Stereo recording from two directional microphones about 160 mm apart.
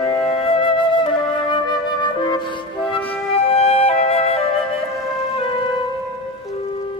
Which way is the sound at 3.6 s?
40° left (ahead or behind).